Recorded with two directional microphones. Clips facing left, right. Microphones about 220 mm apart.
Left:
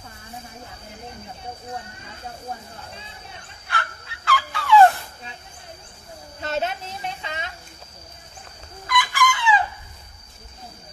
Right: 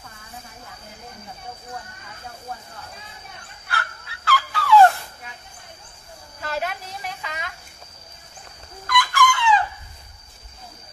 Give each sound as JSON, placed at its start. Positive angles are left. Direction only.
{"t": 3.6, "sound": "fowl", "side_deg": -5}
{"t": 6.4, "sound": "a sound", "side_deg": 25}
{"t": 8.8, "sound": "fowl", "side_deg": 0}